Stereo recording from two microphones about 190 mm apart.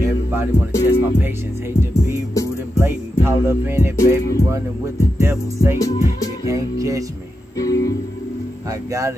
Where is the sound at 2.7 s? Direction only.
10° right (ahead or behind).